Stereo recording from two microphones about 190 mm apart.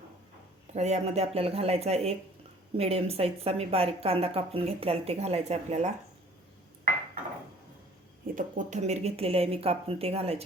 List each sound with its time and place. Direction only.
0.7 s speech: 35° right (ahead or behind)
8.4 s speech: 40° right (ahead or behind)